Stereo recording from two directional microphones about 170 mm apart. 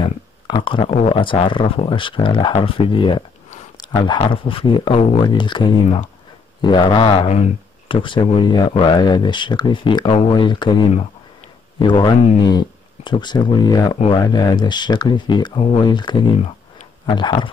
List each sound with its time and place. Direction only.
0.0 s speech: 30° left (ahead or behind)